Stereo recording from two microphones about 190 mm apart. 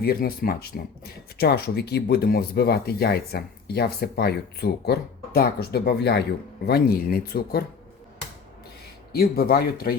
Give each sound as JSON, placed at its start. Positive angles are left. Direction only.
{"t": 0.0, "sound": "speech", "side_deg": 50}
{"t": 9.1, "sound": "speech", "side_deg": 55}